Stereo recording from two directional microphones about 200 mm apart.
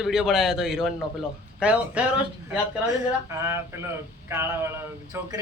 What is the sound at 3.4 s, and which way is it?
A man's voice, 15° right (ahead or behind).